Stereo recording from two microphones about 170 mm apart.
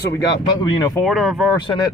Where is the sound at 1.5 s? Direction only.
25° left (ahead or behind).